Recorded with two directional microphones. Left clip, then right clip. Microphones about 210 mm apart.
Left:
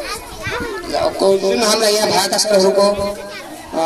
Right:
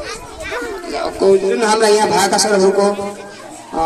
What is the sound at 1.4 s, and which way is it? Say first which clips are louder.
Speech: right 1 dB; 20° left (ahead or behind).